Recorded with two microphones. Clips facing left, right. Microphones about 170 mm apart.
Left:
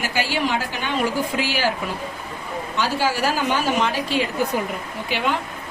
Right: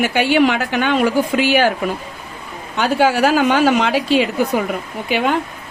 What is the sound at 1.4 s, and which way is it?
Speech, 60° right (ahead or behind).